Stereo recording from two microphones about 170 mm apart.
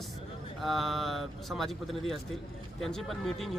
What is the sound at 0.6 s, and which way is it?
Speech, centre (ahead or behind).